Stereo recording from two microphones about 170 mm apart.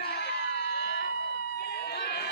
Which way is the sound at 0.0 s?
70° left (ahead or behind).